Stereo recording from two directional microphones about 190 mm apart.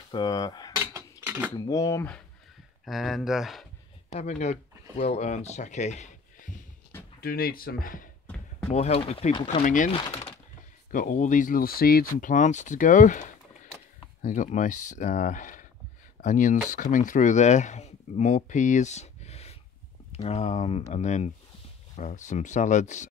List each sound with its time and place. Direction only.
0.1 s cutlery: 20° left (ahead or behind)
1.2 s cutlery: 10° right (ahead or behind)
1.7 s speech: 15° left (ahead or behind)
2.8 s speech: centre (ahead or behind)
4.1 s speech: 35° left (ahead or behind)
7.2 s speech: 50° left (ahead or behind)
8.7 s speech: 30° left (ahead or behind)
9.5 s speech: 45° left (ahead or behind)
9.9 s a sound: 25° left (ahead or behind)
10.9 s speech: 45° left (ahead or behind)